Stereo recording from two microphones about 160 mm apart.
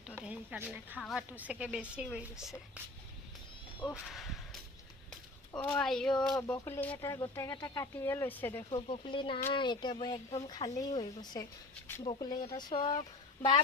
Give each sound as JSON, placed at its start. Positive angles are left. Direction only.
{"t": 0.2, "sound": "a woman's voice", "side_deg": -10}
{"t": 0.9, "sound": "speech", "side_deg": 0}
{"t": 1.3, "sound": "speech", "side_deg": -10}
{"t": 3.9, "sound": "speech", "side_deg": 0}
{"t": 5.5, "sound": "speech", "side_deg": 5}
{"t": 8.7, "sound": "speech", "side_deg": 30}